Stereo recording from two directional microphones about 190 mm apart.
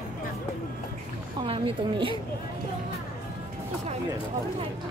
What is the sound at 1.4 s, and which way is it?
Speech, 25° right (ahead or behind).